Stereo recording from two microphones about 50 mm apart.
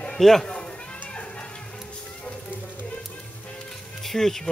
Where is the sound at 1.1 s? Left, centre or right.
Left.